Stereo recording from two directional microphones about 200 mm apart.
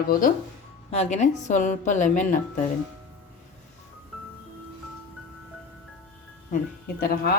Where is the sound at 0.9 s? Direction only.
35° left (ahead or behind).